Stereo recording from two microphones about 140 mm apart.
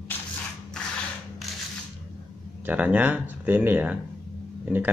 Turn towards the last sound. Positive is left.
turn(degrees=-15)  # may be behind; listen again after turning